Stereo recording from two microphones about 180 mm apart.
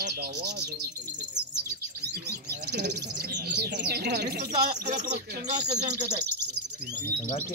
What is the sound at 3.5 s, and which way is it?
Speech, 70° right (ahead or behind).